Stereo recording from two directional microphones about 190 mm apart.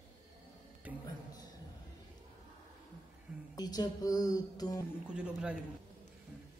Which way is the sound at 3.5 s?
20° left (ahead or behind).